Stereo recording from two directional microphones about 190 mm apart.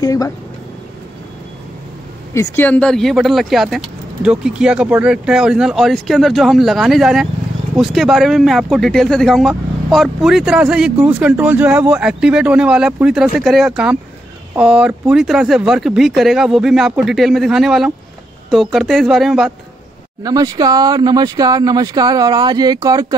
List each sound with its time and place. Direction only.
0.0 s speech: 20° left (ahead or behind)
2.3 s speech: 10° left (ahead or behind)
20.2 s speech: 20° right (ahead or behind)